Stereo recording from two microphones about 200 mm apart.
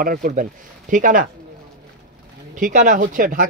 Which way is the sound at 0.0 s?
45° right (ahead or behind).